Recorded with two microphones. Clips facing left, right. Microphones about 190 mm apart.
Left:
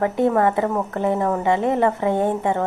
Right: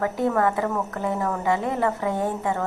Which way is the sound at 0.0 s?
25° left (ahead or behind).